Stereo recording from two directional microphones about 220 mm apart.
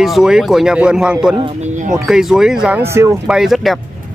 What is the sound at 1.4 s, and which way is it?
Speech, 30° right (ahead or behind).